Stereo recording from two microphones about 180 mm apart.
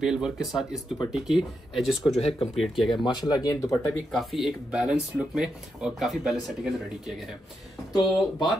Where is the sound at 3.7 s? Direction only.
Centre (ahead or behind).